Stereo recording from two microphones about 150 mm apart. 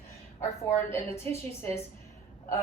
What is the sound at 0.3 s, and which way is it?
A woman's voice, 15° left (ahead or behind).